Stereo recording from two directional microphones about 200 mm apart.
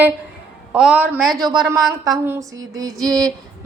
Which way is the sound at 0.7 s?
5° right (ahead or behind).